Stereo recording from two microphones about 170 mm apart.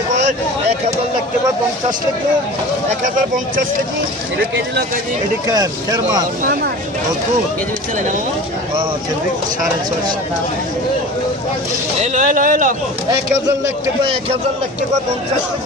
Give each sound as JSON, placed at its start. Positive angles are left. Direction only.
{"t": 5.5, "sound": "speech", "side_deg": -20}
{"t": 12.0, "sound": "speech", "side_deg": -45}